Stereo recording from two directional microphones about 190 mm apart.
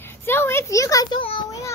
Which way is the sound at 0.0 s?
10° left (ahead or behind).